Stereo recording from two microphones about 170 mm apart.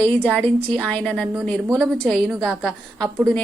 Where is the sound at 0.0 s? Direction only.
10° left (ahead or behind).